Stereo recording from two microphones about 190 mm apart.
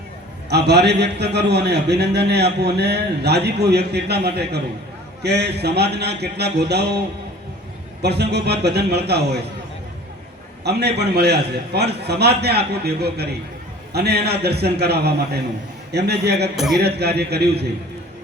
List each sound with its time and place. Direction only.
0.5 s a man's voice: 60° right (ahead or behind)
8.0 s a man's voice: 60° right (ahead or behind)
10.6 s a man's voice: 60° right (ahead or behind)
16.6 s a man's voice: centre (ahead or behind)
16.8 s a man's voice: 60° right (ahead or behind)